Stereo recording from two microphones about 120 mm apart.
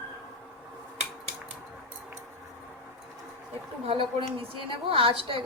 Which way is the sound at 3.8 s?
45° right (ahead or behind).